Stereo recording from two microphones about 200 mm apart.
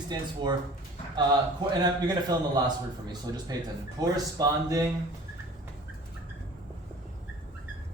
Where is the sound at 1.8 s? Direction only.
20° right (ahead or behind).